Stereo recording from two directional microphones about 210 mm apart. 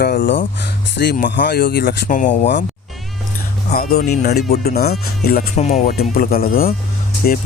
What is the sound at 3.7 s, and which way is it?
Speech, 50° left (ahead or behind).